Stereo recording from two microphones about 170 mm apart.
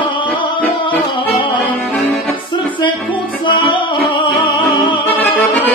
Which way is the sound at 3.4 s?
30° left (ahead or behind).